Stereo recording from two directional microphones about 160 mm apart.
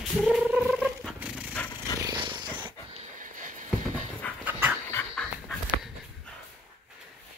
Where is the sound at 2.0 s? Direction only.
30° right (ahead or behind).